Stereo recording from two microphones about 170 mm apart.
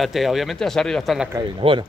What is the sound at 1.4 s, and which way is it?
Speech, 30° right (ahead or behind).